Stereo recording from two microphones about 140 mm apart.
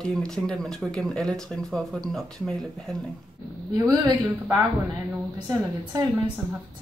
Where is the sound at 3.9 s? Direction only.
25° right (ahead or behind).